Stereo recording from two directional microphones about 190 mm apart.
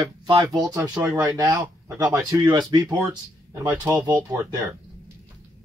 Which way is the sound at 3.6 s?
5° right (ahead or behind).